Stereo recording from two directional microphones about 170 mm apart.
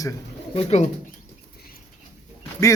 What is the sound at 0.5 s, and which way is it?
Speech, 40° left (ahead or behind).